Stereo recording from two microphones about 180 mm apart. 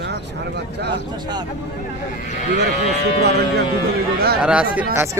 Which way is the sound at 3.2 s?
65° right (ahead or behind).